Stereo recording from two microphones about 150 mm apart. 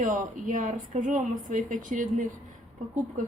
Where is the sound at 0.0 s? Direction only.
60° right (ahead or behind).